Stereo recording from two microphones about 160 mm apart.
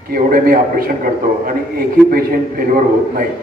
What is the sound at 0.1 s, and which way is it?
A man's voice, 65° right (ahead or behind).